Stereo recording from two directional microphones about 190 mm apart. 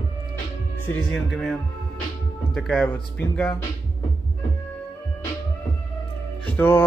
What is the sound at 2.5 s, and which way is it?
Speech, 5° left (ahead or behind).